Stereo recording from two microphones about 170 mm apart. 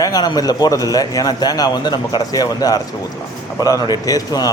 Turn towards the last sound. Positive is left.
turn(degrees=20)  # may be behind; listen again after turning